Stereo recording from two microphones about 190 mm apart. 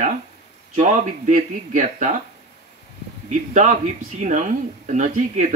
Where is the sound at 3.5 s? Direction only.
40° right (ahead or behind).